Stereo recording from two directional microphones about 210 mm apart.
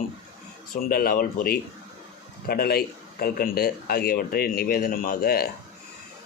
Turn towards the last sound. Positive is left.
turn(degrees=50)  # may be behind; listen again after turning